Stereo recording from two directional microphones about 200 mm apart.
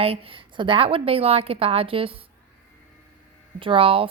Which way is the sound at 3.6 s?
25° right (ahead or behind).